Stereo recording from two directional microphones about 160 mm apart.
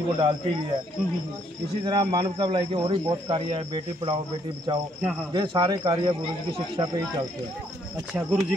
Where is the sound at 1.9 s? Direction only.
30° right (ahead or behind).